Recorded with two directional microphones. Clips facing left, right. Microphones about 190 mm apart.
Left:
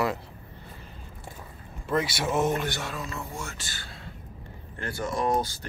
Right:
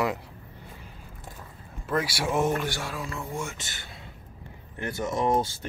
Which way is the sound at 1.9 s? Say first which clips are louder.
Left 1 dB; 5° right (ahead or behind).